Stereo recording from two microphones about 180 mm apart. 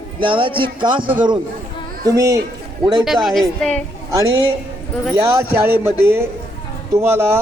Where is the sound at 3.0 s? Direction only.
Centre (ahead or behind).